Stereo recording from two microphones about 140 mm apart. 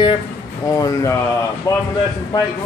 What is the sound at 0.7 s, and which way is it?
A man's voice, 20° left (ahead or behind).